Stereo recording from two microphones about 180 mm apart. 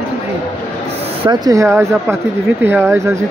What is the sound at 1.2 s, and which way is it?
Speech, 25° right (ahead or behind).